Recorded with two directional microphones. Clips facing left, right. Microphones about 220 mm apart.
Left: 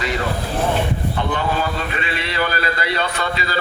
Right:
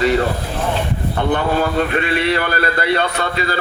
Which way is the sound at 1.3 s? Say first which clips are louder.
Right 7 dB; 55° right (ahead or behind).